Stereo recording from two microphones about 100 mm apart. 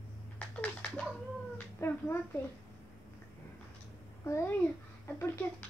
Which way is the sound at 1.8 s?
30° left (ahead or behind).